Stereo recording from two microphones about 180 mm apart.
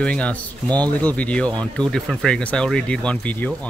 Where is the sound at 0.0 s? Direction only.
5° left (ahead or behind).